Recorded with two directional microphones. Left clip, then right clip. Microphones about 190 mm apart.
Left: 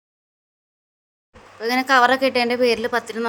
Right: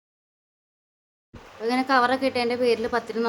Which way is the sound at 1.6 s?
25° left (ahead or behind).